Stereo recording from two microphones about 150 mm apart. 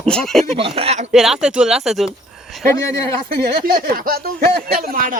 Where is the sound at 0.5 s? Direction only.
40° right (ahead or behind).